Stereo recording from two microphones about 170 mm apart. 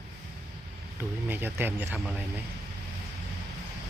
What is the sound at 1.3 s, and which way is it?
Speech, 10° right (ahead or behind).